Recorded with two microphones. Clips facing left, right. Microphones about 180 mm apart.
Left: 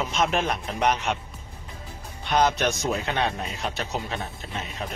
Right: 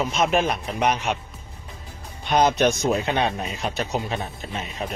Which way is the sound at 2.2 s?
20° right (ahead or behind).